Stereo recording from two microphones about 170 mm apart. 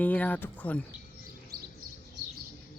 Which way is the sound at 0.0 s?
10° left (ahead or behind).